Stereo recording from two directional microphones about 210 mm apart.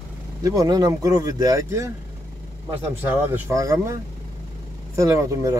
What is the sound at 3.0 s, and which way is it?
Speech, 10° right (ahead or behind).